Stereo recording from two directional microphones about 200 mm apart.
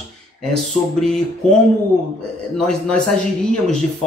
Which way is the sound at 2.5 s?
5° left (ahead or behind).